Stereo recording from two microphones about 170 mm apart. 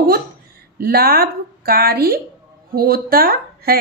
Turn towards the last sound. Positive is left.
turn(degrees=-60)  # may be behind; listen again after turning